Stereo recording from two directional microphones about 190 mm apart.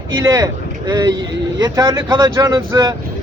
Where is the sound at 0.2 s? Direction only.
15° right (ahead or behind).